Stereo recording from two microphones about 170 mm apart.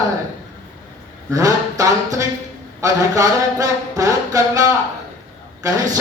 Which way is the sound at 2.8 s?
20° right (ahead or behind).